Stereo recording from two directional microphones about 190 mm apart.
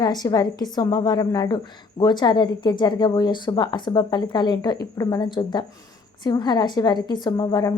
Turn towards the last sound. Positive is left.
turn(degrees=20)  # may be behind; listen again after turning